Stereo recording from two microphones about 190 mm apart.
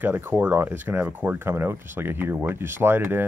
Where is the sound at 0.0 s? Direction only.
10° right (ahead or behind).